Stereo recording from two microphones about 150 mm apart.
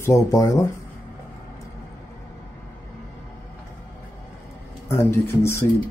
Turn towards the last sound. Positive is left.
turn(degrees=15)  # may be behind; listen again after turning